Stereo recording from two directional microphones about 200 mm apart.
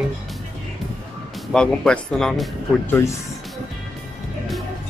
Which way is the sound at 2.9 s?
15° left (ahead or behind).